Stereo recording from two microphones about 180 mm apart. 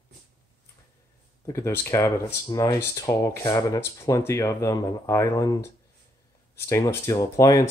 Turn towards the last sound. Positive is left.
turn(degrees=20)  # may be behind; listen again after turning